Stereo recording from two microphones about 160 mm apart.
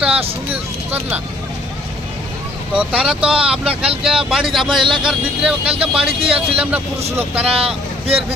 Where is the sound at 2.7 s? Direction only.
5° right (ahead or behind).